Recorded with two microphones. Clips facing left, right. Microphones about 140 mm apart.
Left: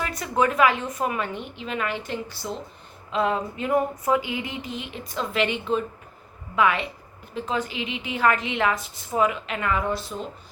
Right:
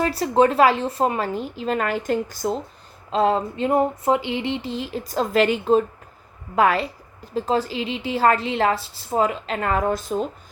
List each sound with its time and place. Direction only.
0.0 s a woman's voice: 35° right (ahead or behind)
3.1 s a woman's voice: 35° right (ahead or behind)